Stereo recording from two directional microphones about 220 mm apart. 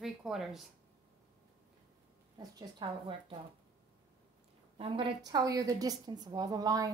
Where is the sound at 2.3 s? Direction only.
20° right (ahead or behind).